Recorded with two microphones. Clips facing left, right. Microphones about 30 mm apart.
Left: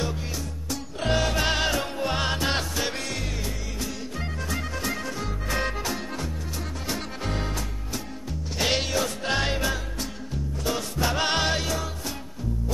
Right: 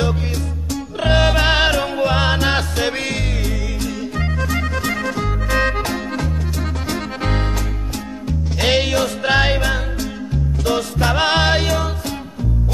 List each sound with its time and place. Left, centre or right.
1.0 s music: right
4.6 s music: right
8.3 s music: right
8.8 s music: right
9.2 s music: right
11.0 s music: right
11.6 s music: right